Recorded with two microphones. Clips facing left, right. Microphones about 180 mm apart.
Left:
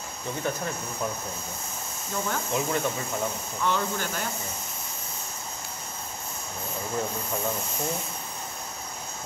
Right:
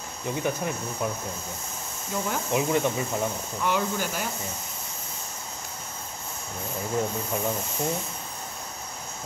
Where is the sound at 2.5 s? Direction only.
15° right (ahead or behind).